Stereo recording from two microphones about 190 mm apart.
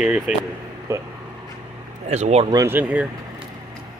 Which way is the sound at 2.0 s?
35° right (ahead or behind).